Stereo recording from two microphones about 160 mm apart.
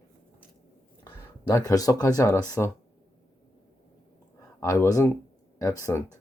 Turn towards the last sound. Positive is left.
turn(degrees=20)  # may be behind; listen again after turning